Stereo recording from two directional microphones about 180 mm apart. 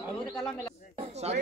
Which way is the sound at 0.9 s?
35° right (ahead or behind).